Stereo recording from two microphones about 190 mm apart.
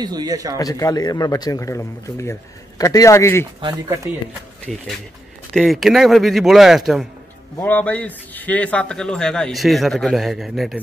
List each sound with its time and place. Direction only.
0.0 s speech: 20° right (ahead or behind)
0.6 s a man's voice: 20° left (ahead or behind)
4.7 s a man's voice: centre (ahead or behind)